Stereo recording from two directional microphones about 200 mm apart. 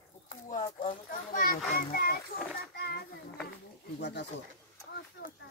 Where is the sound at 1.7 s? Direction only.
50° left (ahead or behind).